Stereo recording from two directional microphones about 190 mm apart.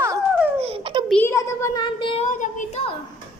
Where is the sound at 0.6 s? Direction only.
30° right (ahead or behind).